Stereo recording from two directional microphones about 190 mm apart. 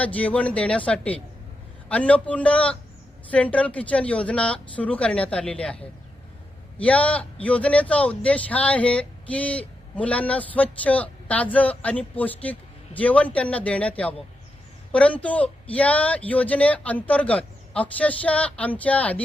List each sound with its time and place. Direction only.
0.0 s a man's voice: 5° left (ahead or behind)
6.7 s a man's voice: 5° left (ahead or behind)